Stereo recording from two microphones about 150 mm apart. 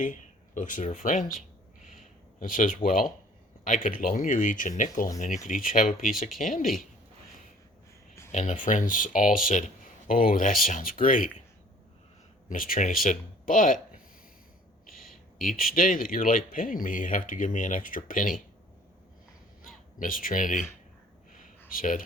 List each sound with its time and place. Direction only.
0.0 s speech: 60° left (ahead or behind)
1.0 s a sound: 55° left (ahead or behind)
3.6 s speech: 60° left (ahead or behind)
8.3 s speech: 55° left (ahead or behind)
12.5 s speech: 70° left (ahead or behind)
14.9 s a sound: centre (ahead or behind)
15.4 s speech: 70° left (ahead or behind)
20.0 s speech: 65° left (ahead or behind)
21.7 s speech: 65° left (ahead or behind)